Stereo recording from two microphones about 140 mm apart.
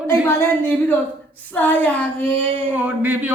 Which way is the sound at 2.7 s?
15° right (ahead or behind).